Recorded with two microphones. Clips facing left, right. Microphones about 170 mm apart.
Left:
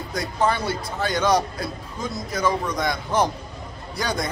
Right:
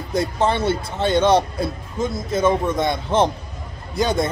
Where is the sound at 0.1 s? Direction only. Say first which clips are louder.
Right 4 dB; 25° right (ahead or behind).